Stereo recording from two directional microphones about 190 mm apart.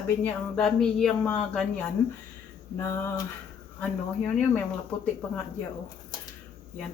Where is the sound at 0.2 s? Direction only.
5° left (ahead or behind).